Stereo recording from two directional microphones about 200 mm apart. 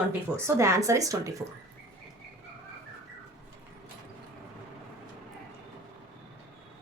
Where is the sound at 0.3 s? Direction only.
15° right (ahead or behind).